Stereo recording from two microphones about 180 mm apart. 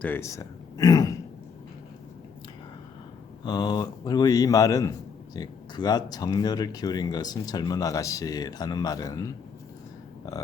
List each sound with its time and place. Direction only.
0.0 s speech: 15° left (ahead or behind)
3.4 s a man's voice: 25° left (ahead or behind)